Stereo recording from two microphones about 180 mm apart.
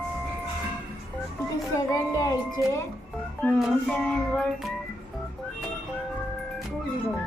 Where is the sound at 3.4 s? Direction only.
5° left (ahead or behind).